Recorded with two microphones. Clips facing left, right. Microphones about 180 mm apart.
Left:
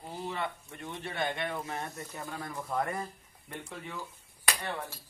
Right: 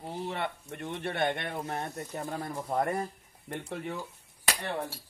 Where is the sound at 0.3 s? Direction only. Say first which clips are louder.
Right 2 dB; 60° right (ahead or behind).